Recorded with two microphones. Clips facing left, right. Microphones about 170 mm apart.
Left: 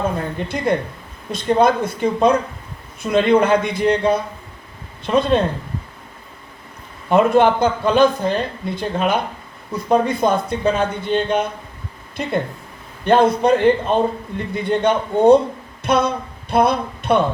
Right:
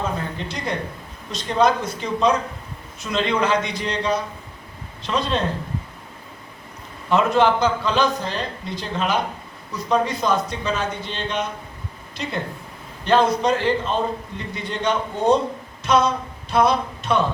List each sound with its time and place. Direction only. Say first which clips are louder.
0.3 s a man's voice: left 7 dB; 55° left (ahead or behind)
7.1 s a man's voice: left 4 dB; 55° left (ahead or behind)